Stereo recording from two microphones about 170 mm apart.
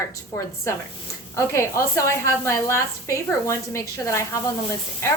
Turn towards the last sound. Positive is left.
turn(degrees=15)  # may be behind; listen again after turning